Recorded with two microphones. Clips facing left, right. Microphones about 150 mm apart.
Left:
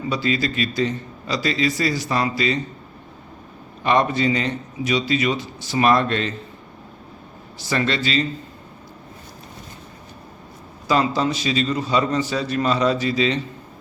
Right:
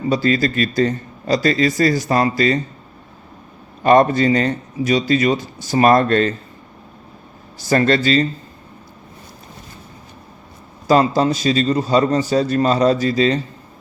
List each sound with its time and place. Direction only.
0.1 s a man's voice: 45° right (ahead or behind)
3.8 s a man's voice: 45° right (ahead or behind)
7.6 s a man's voice: 45° right (ahead or behind)
10.8 s a man's voice: 40° right (ahead or behind)